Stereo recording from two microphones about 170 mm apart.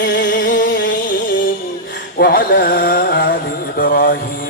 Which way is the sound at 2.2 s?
65° left (ahead or behind).